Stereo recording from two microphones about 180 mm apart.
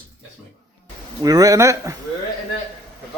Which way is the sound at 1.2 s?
20° right (ahead or behind).